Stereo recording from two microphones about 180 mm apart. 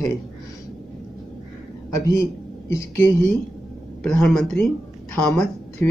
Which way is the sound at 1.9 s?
20° left (ahead or behind).